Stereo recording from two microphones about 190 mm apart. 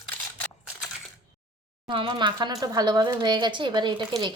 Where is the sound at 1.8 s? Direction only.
25° right (ahead or behind).